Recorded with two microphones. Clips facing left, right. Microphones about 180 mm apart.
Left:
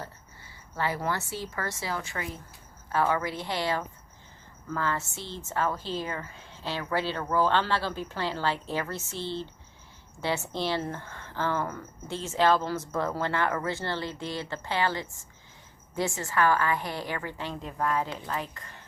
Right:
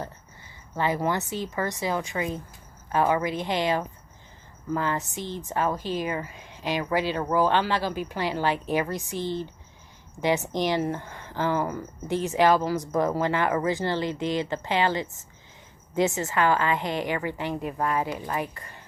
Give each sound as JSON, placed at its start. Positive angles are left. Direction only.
{"t": 0.8, "sound": "speech", "side_deg": -20}